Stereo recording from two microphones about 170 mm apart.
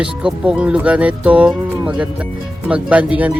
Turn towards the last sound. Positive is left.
turn(degrees=-5)  # may be behind; listen again after turning